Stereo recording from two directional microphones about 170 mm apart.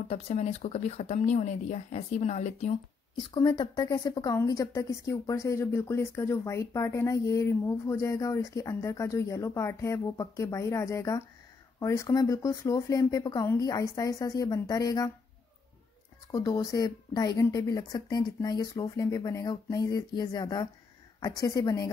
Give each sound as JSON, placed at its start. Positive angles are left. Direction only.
{"t": 0.1, "sound": "speech", "side_deg": 40}
{"t": 3.3, "sound": "speech", "side_deg": 25}
{"t": 16.3, "sound": "speech", "side_deg": 20}